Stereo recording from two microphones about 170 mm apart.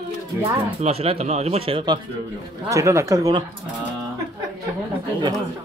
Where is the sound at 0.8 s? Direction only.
35° right (ahead or behind).